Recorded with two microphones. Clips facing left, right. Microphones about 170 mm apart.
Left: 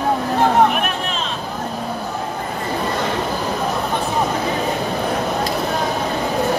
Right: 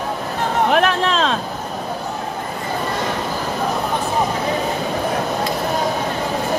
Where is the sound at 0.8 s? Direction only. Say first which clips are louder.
Right 6 dB; 90° right.